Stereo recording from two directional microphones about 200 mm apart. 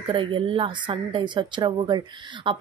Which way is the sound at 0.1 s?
25° right (ahead or behind).